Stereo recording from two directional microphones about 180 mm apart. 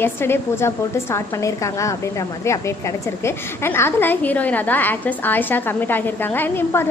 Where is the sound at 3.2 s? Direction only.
15° left (ahead or behind).